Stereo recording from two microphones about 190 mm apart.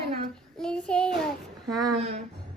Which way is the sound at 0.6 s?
5° left (ahead or behind).